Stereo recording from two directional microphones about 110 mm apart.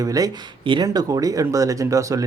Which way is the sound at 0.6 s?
40° right (ahead or behind).